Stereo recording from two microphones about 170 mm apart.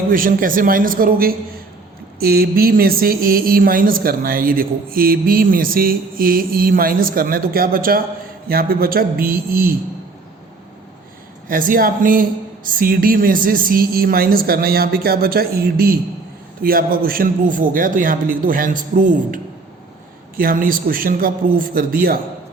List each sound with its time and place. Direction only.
0.1 s speech: 55° right (ahead or behind)
11.4 s a man's voice: 55° right (ahead or behind)